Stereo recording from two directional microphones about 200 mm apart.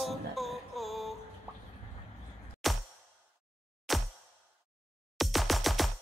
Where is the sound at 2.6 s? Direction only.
Centre (ahead or behind).